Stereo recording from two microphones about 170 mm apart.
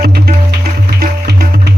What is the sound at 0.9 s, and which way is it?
Music, 65° right (ahead or behind).